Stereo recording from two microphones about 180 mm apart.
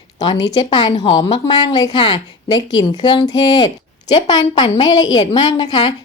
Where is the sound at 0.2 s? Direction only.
25° left (ahead or behind).